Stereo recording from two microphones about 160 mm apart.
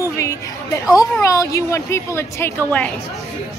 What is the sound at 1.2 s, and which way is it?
A woman's voice, 20° left (ahead or behind).